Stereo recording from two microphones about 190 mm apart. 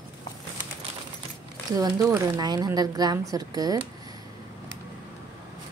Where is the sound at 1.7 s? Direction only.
15° right (ahead or behind).